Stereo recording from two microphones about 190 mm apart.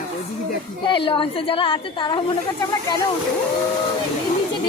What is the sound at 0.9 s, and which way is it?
A woman's voice, 25° left (ahead or behind).